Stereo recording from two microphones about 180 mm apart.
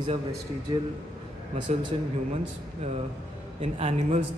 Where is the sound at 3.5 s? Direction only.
35° right (ahead or behind).